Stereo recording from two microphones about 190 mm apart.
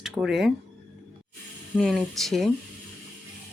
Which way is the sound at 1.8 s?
Centre (ahead or behind).